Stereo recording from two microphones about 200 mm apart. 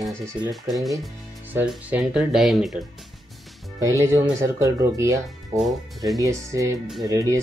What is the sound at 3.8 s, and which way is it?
Speech, 15° right (ahead or behind).